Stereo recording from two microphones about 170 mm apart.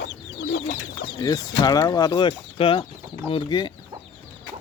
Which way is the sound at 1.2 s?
25° left (ahead or behind).